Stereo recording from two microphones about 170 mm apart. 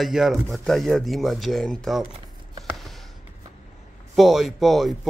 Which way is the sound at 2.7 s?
Centre (ahead or behind).